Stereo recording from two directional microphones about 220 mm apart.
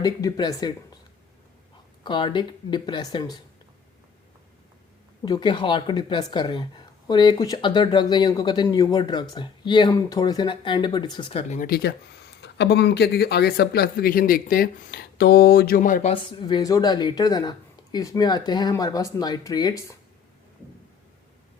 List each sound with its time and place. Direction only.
0.0 s speech: 15° left (ahead or behind)
2.0 s speech: 20° left (ahead or behind)
5.2 s speech: 20° left (ahead or behind)